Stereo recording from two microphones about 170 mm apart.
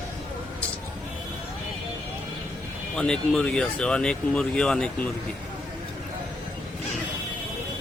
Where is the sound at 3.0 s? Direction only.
5° left (ahead or behind).